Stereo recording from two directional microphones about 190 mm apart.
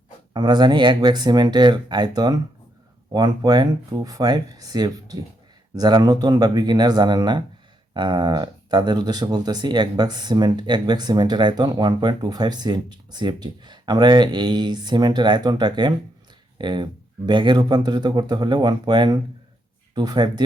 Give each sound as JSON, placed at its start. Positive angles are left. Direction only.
{"t": 0.3, "sound": "speech", "side_deg": -20}